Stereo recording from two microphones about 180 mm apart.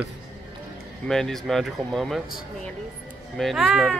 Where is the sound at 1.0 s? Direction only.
Centre (ahead or behind).